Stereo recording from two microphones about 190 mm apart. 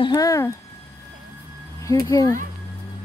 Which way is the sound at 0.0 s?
20° left (ahead or behind).